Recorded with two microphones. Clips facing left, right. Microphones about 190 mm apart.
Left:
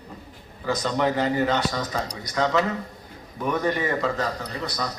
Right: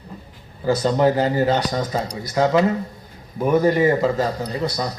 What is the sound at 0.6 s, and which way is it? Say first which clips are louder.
A man's voice: right 6 dB; 35° right (ahead or behind).